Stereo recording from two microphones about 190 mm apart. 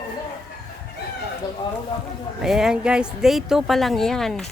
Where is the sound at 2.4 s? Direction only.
5° right (ahead or behind).